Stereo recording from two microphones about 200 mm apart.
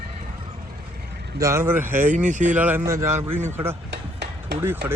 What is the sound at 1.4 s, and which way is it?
Speech, 15° right (ahead or behind).